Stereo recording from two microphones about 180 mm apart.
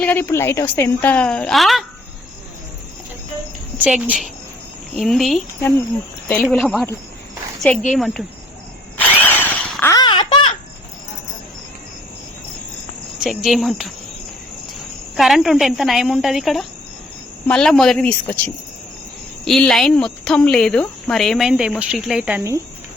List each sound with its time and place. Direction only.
0.0 s a woman's voice: 10° left (ahead or behind)
3.8 s speech: 5° right (ahead or behind)
7.9 s speech: centre (ahead or behind)
9.0 s a sound: 10° left (ahead or behind)
9.9 s a sound: 25° left (ahead or behind)
13.1 s speech: centre (ahead or behind)
15.1 s speech: centre (ahead or behind)